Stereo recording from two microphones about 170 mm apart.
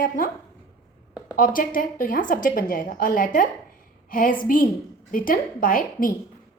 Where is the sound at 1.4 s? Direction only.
55° left (ahead or behind).